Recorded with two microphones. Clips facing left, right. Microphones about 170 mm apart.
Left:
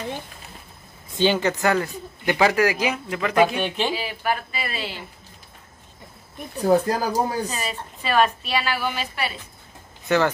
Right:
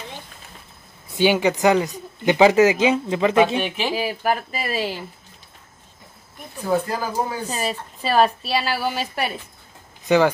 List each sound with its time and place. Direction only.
1.1 s speech: 10° right (ahead or behind)
3.6 s speech: 5° right (ahead or behind)
3.9 s speech: 45° right (ahead or behind)
6.9 s speech: 40° left (ahead or behind)
7.4 s a woman's voice: 35° right (ahead or behind)
10.0 s speech: 15° right (ahead or behind)